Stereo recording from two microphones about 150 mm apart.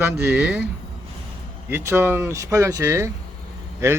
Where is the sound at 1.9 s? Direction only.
15° right (ahead or behind).